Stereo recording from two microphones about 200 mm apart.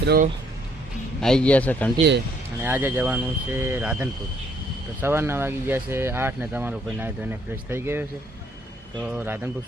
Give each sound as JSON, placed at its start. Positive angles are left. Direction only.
{"t": 0.0, "sound": "speech", "side_deg": -50}
{"t": 1.2, "sound": "a man's voice", "side_deg": 5}
{"t": 2.6, "sound": "speech", "side_deg": -10}